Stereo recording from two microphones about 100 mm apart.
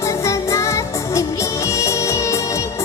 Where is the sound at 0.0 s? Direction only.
30° left (ahead or behind).